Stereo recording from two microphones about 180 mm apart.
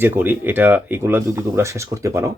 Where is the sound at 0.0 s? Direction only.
10° right (ahead or behind).